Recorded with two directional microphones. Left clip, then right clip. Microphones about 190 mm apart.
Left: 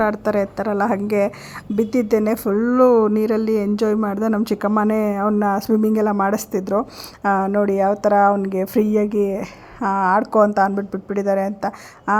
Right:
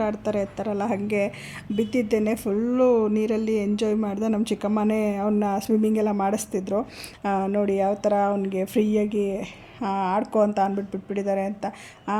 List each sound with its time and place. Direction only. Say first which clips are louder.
0.0 s a woman's voice: left 7 dB; 20° left (ahead or behind)